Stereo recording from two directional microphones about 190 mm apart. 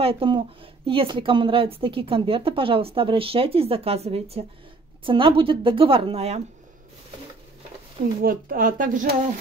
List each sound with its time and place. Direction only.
0.0 s speech: 30° right (ahead or behind)
8.2 s speech: 50° right (ahead or behind)